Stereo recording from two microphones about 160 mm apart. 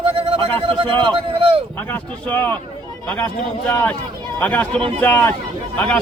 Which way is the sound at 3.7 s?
10° left (ahead or behind).